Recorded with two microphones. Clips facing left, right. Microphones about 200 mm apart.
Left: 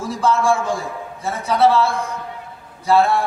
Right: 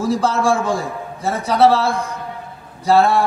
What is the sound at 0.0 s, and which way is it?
A man's voice, 35° right (ahead or behind).